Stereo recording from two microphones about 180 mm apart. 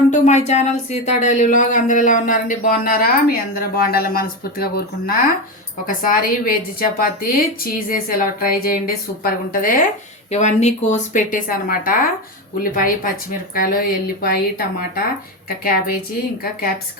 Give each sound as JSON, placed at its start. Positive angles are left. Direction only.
{"t": 0.1, "sound": "speech", "side_deg": 40}
{"t": 10.3, "sound": "speech", "side_deg": 40}